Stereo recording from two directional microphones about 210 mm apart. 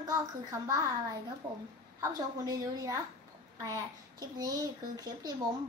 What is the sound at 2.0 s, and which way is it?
A child's voice, 15° right (ahead or behind).